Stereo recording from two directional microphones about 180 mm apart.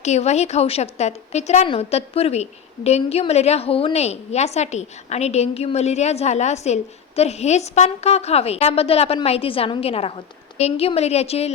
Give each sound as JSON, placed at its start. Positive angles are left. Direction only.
{"t": 0.0, "sound": "a woman's voice", "side_deg": 40}